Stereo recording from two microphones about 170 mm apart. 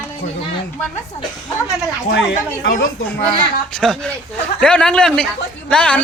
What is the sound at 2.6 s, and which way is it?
Speech, 55° left (ahead or behind).